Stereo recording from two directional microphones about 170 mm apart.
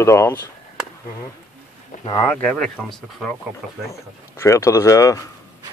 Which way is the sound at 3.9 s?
15° left (ahead or behind).